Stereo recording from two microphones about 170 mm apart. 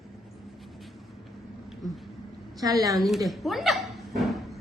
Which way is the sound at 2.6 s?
20° right (ahead or behind).